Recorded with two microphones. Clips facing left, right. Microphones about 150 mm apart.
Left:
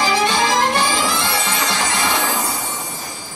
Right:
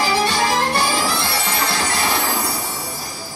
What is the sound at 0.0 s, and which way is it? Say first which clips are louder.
Music: left 1 dB; 20° left (ahead or behind).